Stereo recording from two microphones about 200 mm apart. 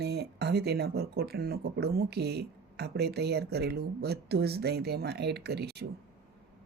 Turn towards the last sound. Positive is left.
turn(degrees=-55)  # may be behind; listen again after turning